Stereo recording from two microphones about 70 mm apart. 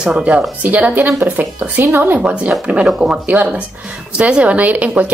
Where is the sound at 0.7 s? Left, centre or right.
Right.